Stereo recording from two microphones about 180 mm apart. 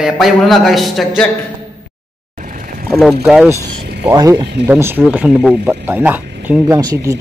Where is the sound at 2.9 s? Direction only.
Centre (ahead or behind).